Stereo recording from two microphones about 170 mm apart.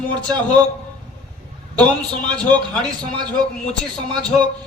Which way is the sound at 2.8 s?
25° right (ahead or behind).